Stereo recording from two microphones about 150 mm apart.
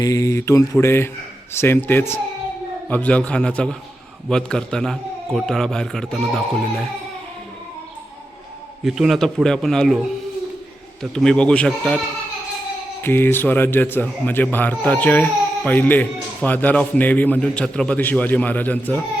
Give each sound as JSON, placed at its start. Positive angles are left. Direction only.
{"t": 0.0, "sound": "mantra", "side_deg": 20}
{"t": 1.5, "sound": "a man's voice", "side_deg": 15}
{"t": 8.8, "sound": "a man's voice", "side_deg": 0}
{"t": 11.1, "sound": "a man's voice", "side_deg": 5}
{"t": 13.0, "sound": "a man's voice", "side_deg": 15}